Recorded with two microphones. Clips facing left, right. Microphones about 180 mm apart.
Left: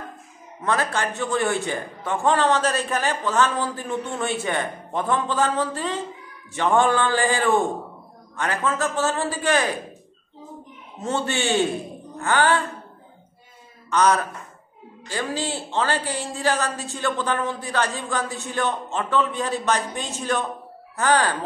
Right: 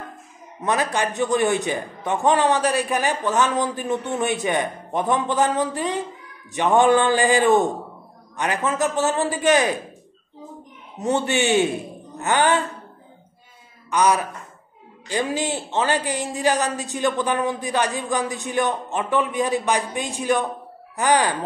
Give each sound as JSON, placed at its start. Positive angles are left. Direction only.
{"t": 0.6, "sound": "a man's voice", "side_deg": -15}
{"t": 11.0, "sound": "a man's voice", "side_deg": -15}
{"t": 13.8, "sound": "a man's voice", "side_deg": -10}